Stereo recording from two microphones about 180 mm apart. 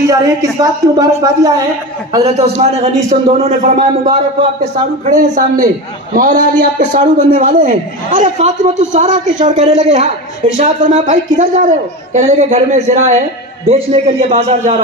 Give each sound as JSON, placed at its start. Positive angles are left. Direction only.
{"t": 0.1, "sound": "speech", "side_deg": -20}
{"t": 2.3, "sound": "a man's voice", "side_deg": -35}